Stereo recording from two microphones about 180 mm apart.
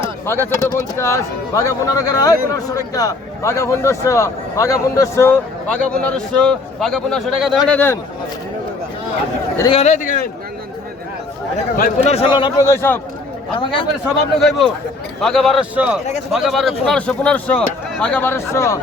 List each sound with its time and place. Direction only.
0.3 s speech: 15° left (ahead or behind); by 7.8 s centre (ahead or behind)
9.6 s a man's voice: 35° left (ahead or behind)
11.8 s a man's voice: 35° left (ahead or behind); by 13.0 s 15° left (ahead or behind)
13.5 s a man's voice: 30° left (ahead or behind)
15.2 s a man's voice: centre (ahead or behind)